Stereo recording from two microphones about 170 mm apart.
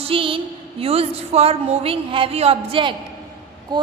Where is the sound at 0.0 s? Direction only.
30° right (ahead or behind).